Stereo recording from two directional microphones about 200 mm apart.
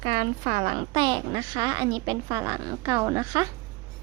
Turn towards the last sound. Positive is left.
turn(degrees=-15)  # may be behind; listen again after turning